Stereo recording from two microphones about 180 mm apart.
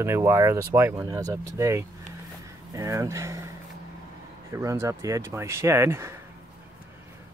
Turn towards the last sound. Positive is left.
turn(degrees=-15)  # may be behind; listen again after turning